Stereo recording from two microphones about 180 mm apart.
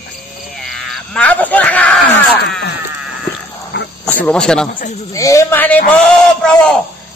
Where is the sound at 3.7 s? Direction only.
80° left.